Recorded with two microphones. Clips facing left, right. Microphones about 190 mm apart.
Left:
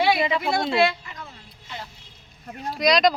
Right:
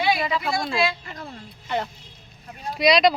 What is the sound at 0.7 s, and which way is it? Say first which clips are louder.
Speech: left 4 dB; 60° left (ahead or behind).